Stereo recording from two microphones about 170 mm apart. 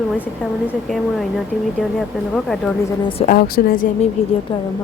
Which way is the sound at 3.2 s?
60° left (ahead or behind).